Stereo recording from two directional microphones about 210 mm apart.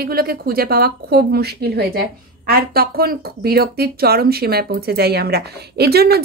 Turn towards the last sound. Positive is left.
turn(degrees=-50)  # may be behind; listen again after turning